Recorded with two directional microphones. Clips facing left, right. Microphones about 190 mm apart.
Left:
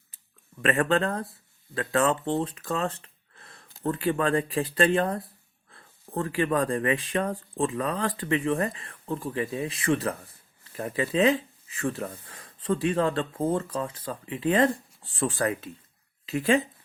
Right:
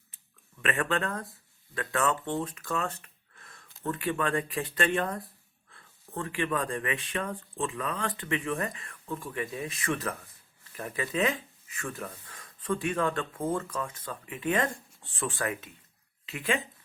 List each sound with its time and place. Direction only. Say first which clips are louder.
0.6 s speech: left 6 dB; 35° left (ahead or behind)